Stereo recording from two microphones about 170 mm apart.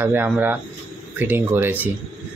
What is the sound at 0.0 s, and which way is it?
Speech, 10° right (ahead or behind).